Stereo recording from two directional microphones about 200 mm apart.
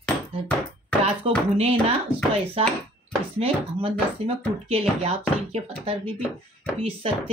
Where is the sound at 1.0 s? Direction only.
30° right (ahead or behind).